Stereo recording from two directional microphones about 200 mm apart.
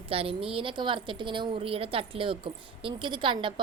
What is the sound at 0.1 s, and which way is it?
Speech, 30° right (ahead or behind).